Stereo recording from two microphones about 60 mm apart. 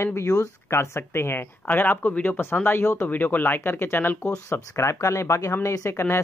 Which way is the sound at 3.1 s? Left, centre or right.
Left.